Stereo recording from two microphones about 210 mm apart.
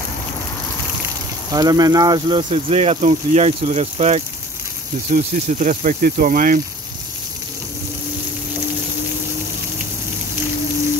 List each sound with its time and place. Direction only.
1.5 s speech: 20° right (ahead or behind); by 6.6 s 40° right (ahead or behind)